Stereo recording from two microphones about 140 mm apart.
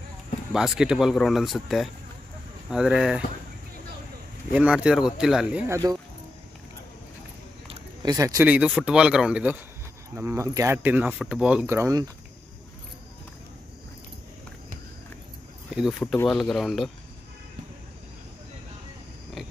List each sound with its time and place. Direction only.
0.5 s speech: 5° right (ahead or behind)
4.5 s speech: 10° right (ahead or behind)
5.7 s speech: 25° right (ahead or behind)
8.0 s speech: 25° right (ahead or behind)
8.5 s speech: 10° right (ahead or behind)
10.1 s speech: 20° right (ahead or behind)
15.7 s speech: centre (ahead or behind)